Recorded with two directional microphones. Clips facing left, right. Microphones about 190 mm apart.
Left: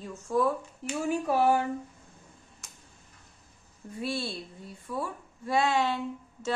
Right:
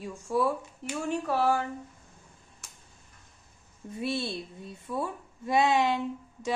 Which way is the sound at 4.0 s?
20° right (ahead or behind).